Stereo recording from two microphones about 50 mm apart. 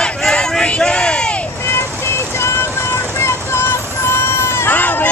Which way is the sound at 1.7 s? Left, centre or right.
Left.